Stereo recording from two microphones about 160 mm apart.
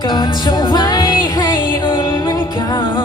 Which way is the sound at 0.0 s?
30° left (ahead or behind).